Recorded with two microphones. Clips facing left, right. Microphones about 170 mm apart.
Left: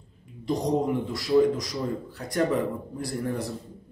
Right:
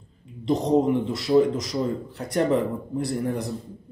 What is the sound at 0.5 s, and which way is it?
A man's voice, 25° right (ahead or behind).